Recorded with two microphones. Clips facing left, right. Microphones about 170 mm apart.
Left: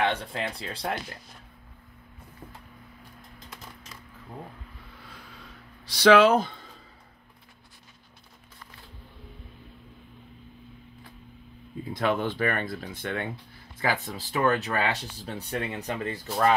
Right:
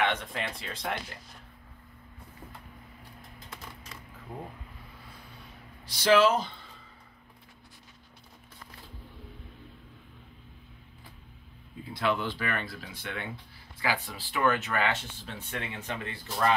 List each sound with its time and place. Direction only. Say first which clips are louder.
0.0 s speech: left 2 dB; 35° left (ahead or behind)
5.9 s speech: left 5 dB; 70° left (ahead or behind); by 6.7 s 50° left (ahead or behind)
11.9 s speech: left 3 dB; 45° left (ahead or behind)